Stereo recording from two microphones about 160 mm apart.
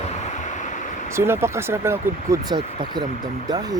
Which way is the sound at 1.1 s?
15° right (ahead or behind).